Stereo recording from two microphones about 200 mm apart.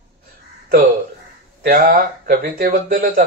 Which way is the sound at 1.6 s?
45° right (ahead or behind).